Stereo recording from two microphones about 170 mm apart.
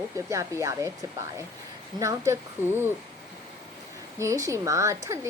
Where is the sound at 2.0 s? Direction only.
15° right (ahead or behind).